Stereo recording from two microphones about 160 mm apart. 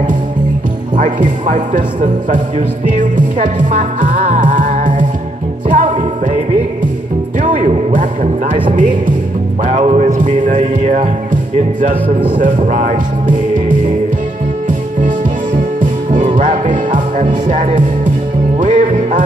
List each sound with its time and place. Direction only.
0.9 s music: 50° right (ahead or behind)
7.3 s music: 50° right (ahead or behind)
9.7 s music: 45° right (ahead or behind)
12.4 s music: 50° right (ahead or behind)
15.0 s music: 50° right (ahead or behind)